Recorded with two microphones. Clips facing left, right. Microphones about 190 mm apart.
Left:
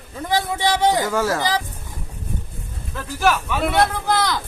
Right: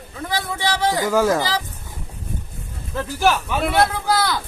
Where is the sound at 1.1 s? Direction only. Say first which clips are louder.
Right 4 dB; 15° right (ahead or behind).